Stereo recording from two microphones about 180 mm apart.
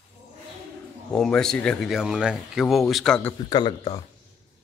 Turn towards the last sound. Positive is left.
turn(degrees=25)  # may be behind; listen again after turning